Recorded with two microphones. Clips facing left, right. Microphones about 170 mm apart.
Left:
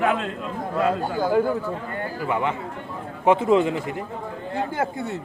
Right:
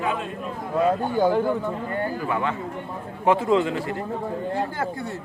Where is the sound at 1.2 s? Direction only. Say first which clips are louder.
Left 2 dB; 10° left (ahead or behind).